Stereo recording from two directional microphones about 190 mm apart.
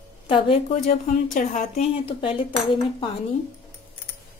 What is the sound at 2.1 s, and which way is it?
Speech, 25° left (ahead or behind).